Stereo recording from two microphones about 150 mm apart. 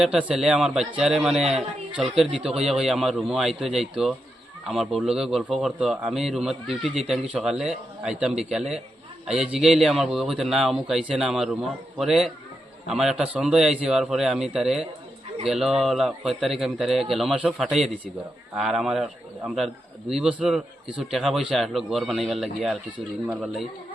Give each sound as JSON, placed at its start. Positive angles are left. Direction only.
{"t": 0.0, "sound": "a man's voice", "side_deg": -5}